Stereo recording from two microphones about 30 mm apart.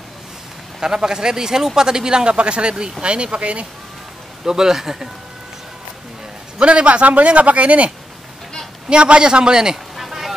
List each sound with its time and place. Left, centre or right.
0.7 s a man's voice: centre; by 3.6 s right
4.5 s speech: centre
6.6 s a man's voice: right
8.8 s a man's voice: right
9.9 s bee: centre